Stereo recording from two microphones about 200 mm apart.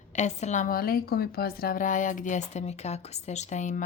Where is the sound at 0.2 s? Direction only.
35° left (ahead or behind).